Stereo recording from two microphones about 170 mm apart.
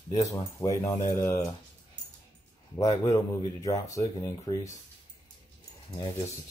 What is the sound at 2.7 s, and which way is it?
Speech, 20° left (ahead or behind).